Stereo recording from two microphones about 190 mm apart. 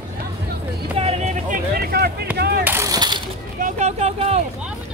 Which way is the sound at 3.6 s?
40° right (ahead or behind).